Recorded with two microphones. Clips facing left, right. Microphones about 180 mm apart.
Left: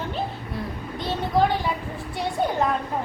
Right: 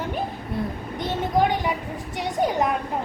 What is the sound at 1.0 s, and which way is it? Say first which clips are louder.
A child's voice: even; 15° right (ahead or behind).